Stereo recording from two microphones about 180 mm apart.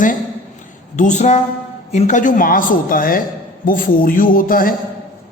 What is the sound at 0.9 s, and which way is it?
A man's voice, 40° left (ahead or behind).